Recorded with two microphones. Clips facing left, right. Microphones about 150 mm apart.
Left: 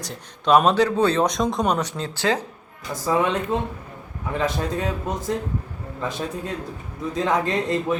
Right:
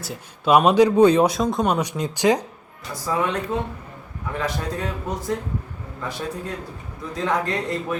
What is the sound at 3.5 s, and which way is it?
Speech, 25° left (ahead or behind).